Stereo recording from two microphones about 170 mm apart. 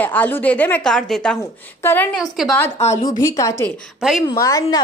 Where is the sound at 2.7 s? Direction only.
40° left (ahead or behind).